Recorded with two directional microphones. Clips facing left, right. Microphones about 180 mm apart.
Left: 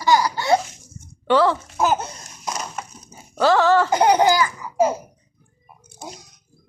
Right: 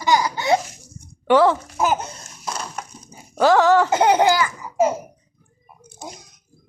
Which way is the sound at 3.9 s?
25° right (ahead or behind).